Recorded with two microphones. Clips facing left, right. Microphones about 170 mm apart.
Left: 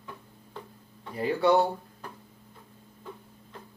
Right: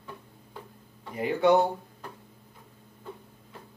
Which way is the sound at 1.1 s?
20° right (ahead or behind).